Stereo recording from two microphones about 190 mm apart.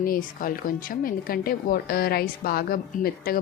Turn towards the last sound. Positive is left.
turn(degrees=50)  # may be behind; listen again after turning